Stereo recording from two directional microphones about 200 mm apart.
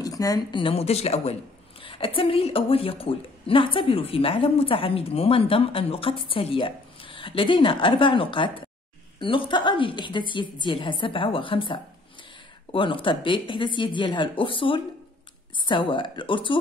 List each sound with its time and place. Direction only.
0.0 s a woman's voice: 15° left (ahead or behind)